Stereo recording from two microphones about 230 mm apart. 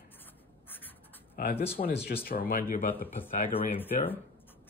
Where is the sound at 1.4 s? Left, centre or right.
Left.